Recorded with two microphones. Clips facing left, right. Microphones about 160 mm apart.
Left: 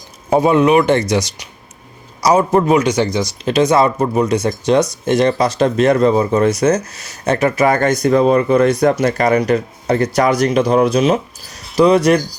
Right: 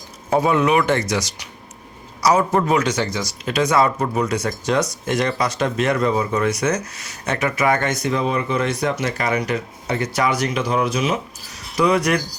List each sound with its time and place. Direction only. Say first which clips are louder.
0.3 s speech: left 5 dB; 25° left (ahead or behind)